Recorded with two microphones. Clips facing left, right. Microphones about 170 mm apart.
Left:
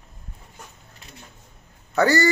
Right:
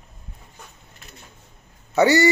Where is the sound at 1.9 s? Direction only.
20° right (ahead or behind).